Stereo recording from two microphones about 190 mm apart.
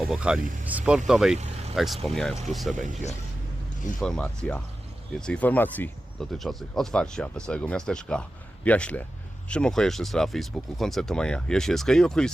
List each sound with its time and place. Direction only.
0.0 s speech: 5° right (ahead or behind)
0.3 s speech: 45° right (ahead or behind)
0.7 s speech: 5° right (ahead or behind)
1.4 s vehicle: 35° right (ahead or behind)
1.7 s speech: centre (ahead or behind)
4.0 s speech: 5° left (ahead or behind)